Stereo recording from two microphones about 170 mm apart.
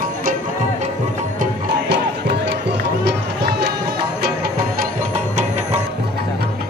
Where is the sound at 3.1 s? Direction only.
85° right.